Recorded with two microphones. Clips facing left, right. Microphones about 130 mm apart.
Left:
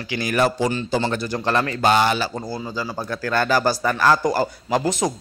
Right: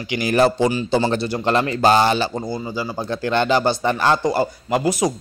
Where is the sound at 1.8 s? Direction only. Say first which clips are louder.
Right 3 dB; 35° right (ahead or behind).